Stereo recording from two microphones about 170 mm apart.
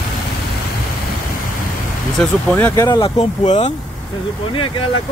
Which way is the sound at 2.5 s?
15° left (ahead or behind).